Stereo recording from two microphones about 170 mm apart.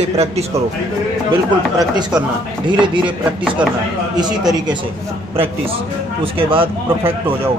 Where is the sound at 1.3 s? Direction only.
25° right (ahead or behind).